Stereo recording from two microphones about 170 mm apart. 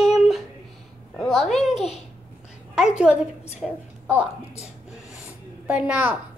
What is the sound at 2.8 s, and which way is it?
A woman's voice, 5° right (ahead or behind).